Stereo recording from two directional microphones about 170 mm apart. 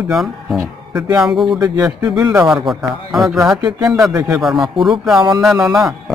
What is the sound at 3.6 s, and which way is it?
Speech, 25° right (ahead or behind).